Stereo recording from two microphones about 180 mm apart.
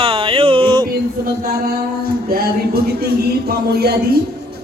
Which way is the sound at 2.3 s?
60° right (ahead or behind).